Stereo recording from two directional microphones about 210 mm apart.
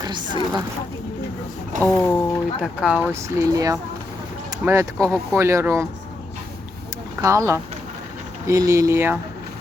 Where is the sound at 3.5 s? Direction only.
15° right (ahead or behind).